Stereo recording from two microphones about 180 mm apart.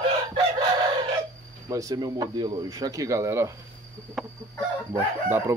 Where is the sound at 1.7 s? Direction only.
20° right (ahead or behind).